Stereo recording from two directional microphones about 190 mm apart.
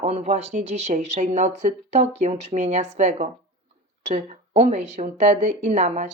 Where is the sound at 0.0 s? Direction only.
35° right (ahead or behind).